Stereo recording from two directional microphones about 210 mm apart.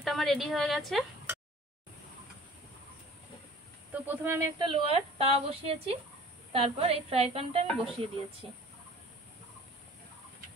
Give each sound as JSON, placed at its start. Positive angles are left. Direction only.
{"t": 0.0, "sound": "a woman's voice", "side_deg": 0}
{"t": 3.9, "sound": "a woman's voice", "side_deg": -10}
{"t": 7.6, "sound": "a woman's voice", "side_deg": 0}